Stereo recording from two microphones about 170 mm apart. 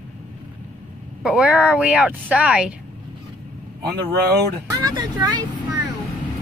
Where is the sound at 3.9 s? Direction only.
70° right (ahead or behind).